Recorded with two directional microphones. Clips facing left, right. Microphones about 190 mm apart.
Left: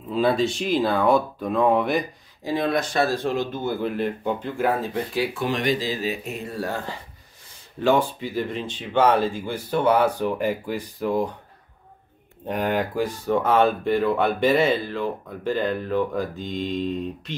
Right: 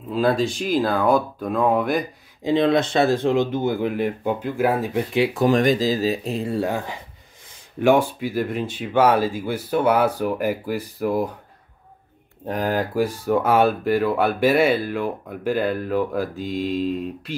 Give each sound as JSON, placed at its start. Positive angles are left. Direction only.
{"t": 0.1, "sound": "speech", "side_deg": 0}
{"t": 2.4, "sound": "speech", "side_deg": -20}
{"t": 5.3, "sound": "speech", "side_deg": -45}
{"t": 7.8, "sound": "speech", "side_deg": -10}
{"t": 12.4, "sound": "speech", "side_deg": 0}